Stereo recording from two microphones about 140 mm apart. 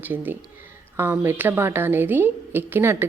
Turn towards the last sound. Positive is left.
turn(degrees=-15)  # may be behind; listen again after turning